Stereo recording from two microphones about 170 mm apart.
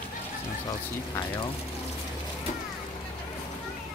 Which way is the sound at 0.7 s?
25° left (ahead or behind).